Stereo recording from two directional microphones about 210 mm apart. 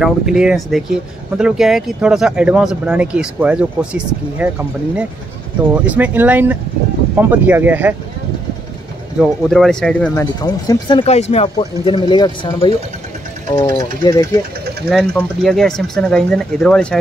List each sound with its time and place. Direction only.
0.0 s speech: 5° right (ahead or behind)
9.2 s speech: centre (ahead or behind)
10.4 s speech: 20° left (ahead or behind)
14.9 s speech: centre (ahead or behind)